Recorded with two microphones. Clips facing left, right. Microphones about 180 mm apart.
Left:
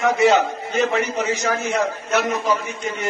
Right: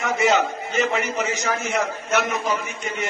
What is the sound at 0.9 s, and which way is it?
Speech, 35° left (ahead or behind).